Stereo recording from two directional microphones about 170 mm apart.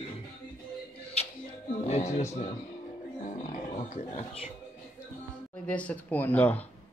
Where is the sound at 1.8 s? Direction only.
45° left (ahead or behind).